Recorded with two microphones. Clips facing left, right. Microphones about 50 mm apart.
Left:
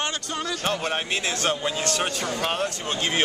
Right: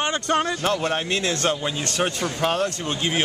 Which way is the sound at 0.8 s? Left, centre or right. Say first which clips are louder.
Right 3 dB; centre.